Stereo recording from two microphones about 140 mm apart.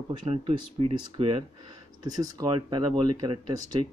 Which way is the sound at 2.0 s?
25° right (ahead or behind).